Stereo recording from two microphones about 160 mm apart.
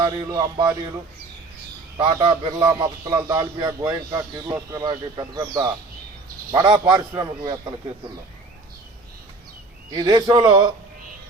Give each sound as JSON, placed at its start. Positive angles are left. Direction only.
{"t": 0.0, "sound": "a man's voice", "side_deg": -25}
{"t": 2.0, "sound": "a man's voice", "side_deg": -30}
{"t": 9.9, "sound": "a man's voice", "side_deg": -25}